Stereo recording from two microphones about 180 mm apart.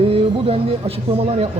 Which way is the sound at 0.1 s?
30° right (ahead or behind).